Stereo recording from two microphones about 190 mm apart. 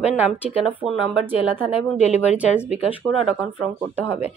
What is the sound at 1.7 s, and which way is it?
Speech, 35° left (ahead or behind).